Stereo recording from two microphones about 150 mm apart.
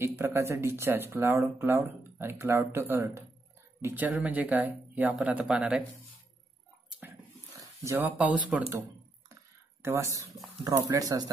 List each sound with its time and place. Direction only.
0.0 s speech: 15° right (ahead or behind)
7.8 s speech: 15° right (ahead or behind)
9.3 s a sound: 20° right (ahead or behind)
10.6 s speech: 25° right (ahead or behind)